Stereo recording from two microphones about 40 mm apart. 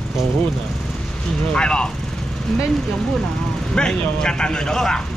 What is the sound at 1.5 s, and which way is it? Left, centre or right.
Speech, left.